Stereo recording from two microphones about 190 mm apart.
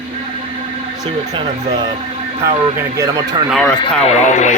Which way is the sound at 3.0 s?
15° right (ahead or behind).